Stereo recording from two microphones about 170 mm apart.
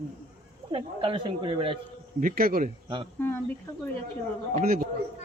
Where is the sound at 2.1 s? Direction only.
55° right (ahead or behind).